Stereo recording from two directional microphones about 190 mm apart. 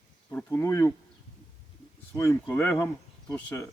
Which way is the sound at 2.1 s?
15° left (ahead or behind).